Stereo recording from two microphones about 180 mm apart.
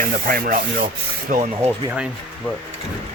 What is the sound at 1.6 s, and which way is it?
Speech, 10° right (ahead or behind).